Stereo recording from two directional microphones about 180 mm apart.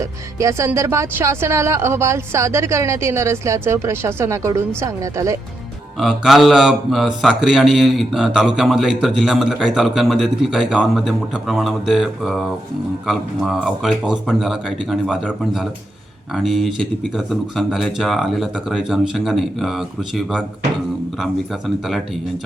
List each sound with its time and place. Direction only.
0.0 s speech: 15° right (ahead or behind)
6.0 s a man's voice: centre (ahead or behind)
21.8 s a man's voice: centre (ahead or behind)